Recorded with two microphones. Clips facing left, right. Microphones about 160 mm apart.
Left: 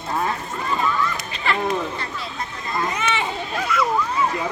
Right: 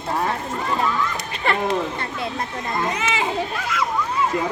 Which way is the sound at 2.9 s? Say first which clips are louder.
Even; 90° right.